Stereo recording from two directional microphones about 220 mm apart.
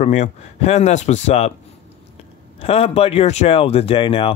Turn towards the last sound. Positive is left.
turn(degrees=25)  # may be behind; listen again after turning